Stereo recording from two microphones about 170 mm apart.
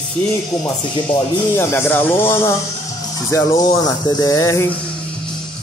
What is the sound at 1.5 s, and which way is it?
Speech, 15° left (ahead or behind).